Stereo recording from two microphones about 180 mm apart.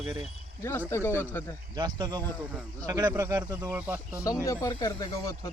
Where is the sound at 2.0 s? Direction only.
25° right (ahead or behind).